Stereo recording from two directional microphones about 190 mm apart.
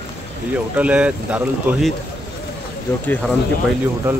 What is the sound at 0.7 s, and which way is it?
Speech, 5° right (ahead or behind).